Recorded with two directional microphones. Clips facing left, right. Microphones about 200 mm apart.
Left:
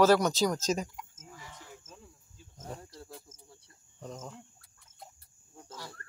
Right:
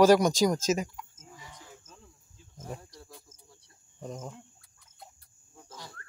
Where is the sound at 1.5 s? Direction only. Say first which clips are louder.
Left 1 dB; 5° left (ahead or behind).